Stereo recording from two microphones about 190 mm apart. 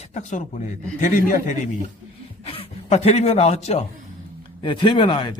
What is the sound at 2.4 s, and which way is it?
A man's voice, 30° left (ahead or behind).